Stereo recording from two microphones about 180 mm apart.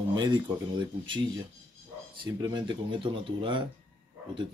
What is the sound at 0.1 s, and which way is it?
Speech, 25° right (ahead or behind).